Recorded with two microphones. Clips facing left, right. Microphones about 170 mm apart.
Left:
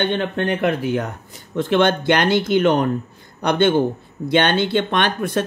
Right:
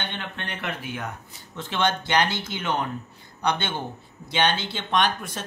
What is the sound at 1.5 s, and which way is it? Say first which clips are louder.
Speech: left 9 dB; 55° left (ahead or behind).